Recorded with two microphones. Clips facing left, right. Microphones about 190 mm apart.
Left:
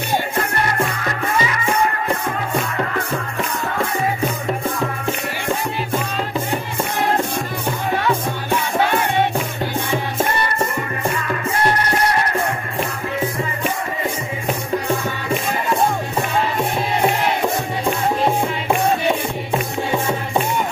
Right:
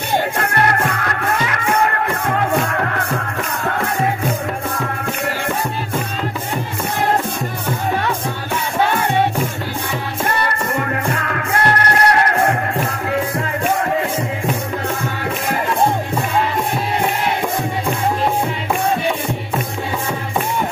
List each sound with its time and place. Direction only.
0.4 s music: 65° right (ahead or behind)
10.7 s music: 65° right (ahead or behind)